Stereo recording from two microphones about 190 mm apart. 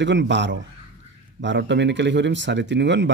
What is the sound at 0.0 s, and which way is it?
Speech, 70° right (ahead or behind).